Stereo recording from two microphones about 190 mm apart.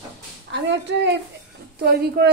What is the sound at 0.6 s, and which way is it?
Speech, 65° right (ahead or behind).